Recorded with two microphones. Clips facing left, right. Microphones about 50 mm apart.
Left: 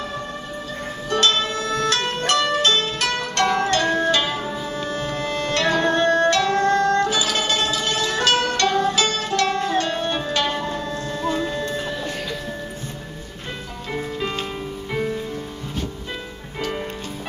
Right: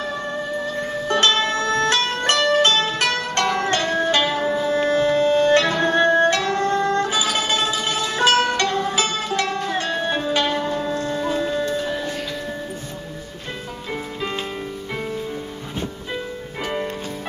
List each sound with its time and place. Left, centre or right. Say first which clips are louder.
1.0 s music: right 1 dB; right; by 11.9 s centre